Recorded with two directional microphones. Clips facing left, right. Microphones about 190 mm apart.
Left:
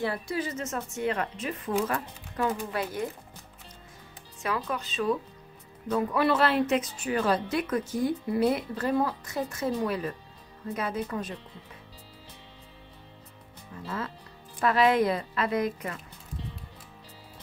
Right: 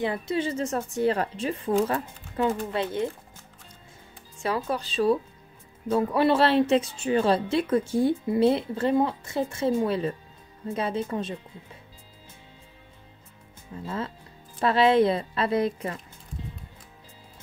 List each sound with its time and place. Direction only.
0.0 s speech: 20° right (ahead or behind)
4.4 s speech: 30° right (ahead or behind)
13.8 s speech: 25° right (ahead or behind)